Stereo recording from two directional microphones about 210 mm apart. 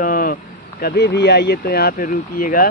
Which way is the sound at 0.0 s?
40° left (ahead or behind).